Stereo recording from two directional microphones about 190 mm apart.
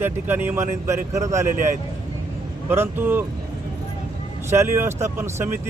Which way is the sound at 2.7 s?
10° right (ahead or behind).